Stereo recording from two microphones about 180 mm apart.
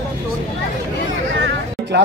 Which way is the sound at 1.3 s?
90° right.